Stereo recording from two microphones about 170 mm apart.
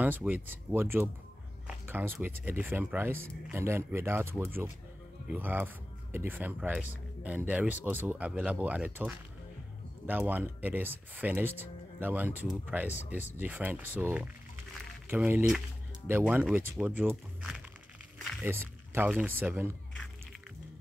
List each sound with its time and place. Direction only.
0.0 s speech: 10° right (ahead or behind)